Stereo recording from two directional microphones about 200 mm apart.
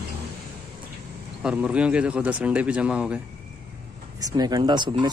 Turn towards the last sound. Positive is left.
turn(degrees=-20)  # may be behind; listen again after turning